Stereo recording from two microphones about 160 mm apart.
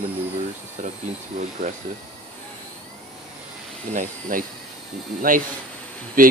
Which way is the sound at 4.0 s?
60° right (ahead or behind).